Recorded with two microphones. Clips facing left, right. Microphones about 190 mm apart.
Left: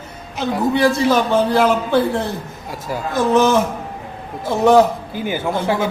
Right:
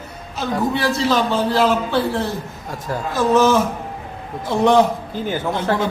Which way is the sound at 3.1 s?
15° left (ahead or behind).